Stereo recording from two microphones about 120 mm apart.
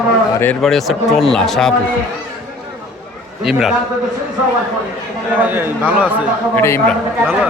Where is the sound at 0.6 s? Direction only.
Centre (ahead or behind).